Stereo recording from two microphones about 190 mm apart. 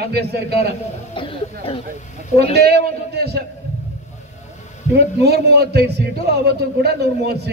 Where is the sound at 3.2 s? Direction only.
55° right (ahead or behind).